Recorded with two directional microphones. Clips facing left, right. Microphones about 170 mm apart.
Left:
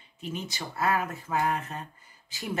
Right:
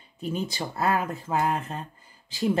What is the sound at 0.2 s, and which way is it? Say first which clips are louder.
Speech: right 6 dB; 35° right (ahead or behind).